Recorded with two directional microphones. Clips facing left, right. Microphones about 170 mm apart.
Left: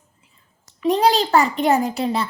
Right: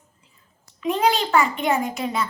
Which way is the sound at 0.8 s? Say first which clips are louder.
Left 4 dB; 35° left (ahead or behind).